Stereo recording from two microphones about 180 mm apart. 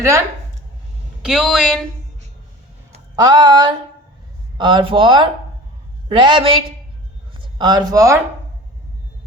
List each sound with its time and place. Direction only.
1.2 s speech: 5° right (ahead or behind)
3.2 s speech: 25° right (ahead or behind)